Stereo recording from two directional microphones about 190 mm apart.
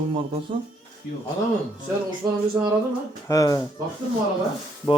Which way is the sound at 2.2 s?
20° right (ahead or behind).